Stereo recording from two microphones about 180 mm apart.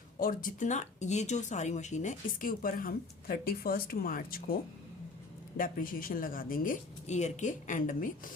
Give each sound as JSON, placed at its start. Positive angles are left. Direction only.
{"t": 0.2, "sound": "speech", "side_deg": 50}
{"t": 5.5, "sound": "speech", "side_deg": 50}